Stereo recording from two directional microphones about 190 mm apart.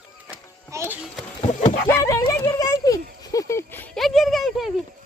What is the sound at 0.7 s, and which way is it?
Music, 15° right (ahead or behind).